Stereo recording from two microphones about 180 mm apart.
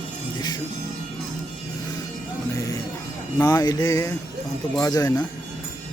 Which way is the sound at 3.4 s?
20° left (ahead or behind).